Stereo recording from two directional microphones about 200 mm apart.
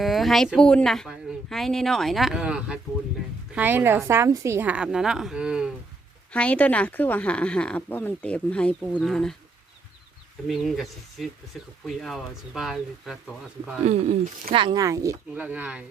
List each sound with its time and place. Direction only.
0.0 s a woman's voice: centre (ahead or behind)
6.3 s speech: 5° left (ahead or behind)
10.4 s speech: centre (ahead or behind)
13.8 s a woman's voice: 35° right (ahead or behind); by 15.8 s 5° right (ahead or behind)